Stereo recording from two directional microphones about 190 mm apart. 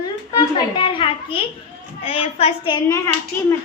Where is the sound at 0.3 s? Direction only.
25° left (ahead or behind).